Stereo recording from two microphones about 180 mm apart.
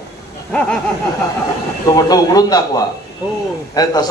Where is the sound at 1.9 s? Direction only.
20° left (ahead or behind).